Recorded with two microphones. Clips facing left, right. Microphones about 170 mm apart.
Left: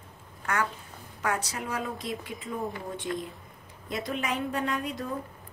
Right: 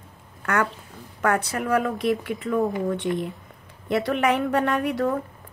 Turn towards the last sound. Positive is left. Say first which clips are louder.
# right 9 dB
turn(degrees=-70)  # may be behind; listen again after turning